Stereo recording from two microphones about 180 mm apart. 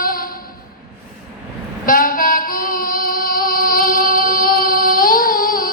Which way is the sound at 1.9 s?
50° left (ahead or behind).